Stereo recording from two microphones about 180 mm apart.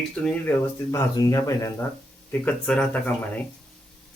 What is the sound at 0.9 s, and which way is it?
Speech, 20° left (ahead or behind).